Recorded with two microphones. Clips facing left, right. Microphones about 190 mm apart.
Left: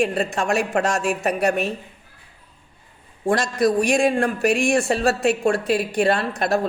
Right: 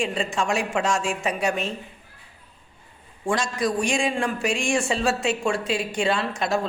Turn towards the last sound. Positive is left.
turn(degrees=60)  # may be behind; listen again after turning